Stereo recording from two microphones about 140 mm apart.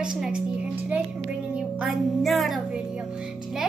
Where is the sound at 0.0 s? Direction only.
5° right (ahead or behind).